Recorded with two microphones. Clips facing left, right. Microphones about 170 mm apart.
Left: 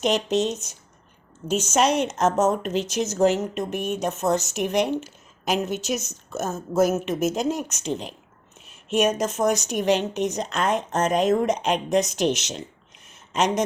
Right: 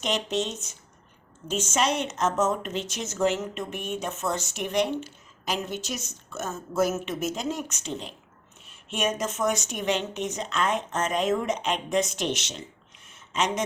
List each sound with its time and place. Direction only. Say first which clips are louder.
0.0 s a woman's voice: left 6 dB; 40° left (ahead or behind)
1.7 s a woman's voice: left 5 dB; 40° left (ahead or behind)
13.1 s a sound: left 4 dB; 40° left (ahead or behind)